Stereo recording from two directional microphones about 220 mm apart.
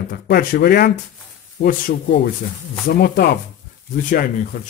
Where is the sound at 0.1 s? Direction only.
40° left (ahead or behind).